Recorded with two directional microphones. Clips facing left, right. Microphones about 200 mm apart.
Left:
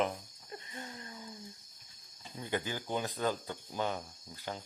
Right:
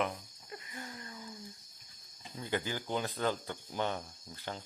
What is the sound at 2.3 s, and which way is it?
Speech, 20° left (ahead or behind).